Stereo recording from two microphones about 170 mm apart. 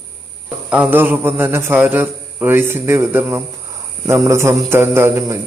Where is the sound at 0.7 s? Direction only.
10° right (ahead or behind).